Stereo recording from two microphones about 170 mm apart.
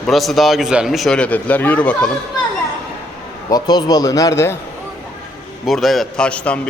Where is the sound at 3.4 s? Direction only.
25° left (ahead or behind).